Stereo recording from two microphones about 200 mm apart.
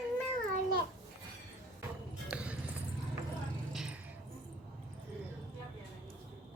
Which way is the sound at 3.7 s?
5° right (ahead or behind).